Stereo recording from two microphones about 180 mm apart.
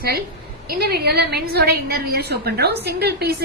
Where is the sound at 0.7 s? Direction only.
60° right (ahead or behind).